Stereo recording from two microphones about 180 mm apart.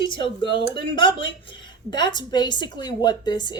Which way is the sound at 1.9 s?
25° left (ahead or behind).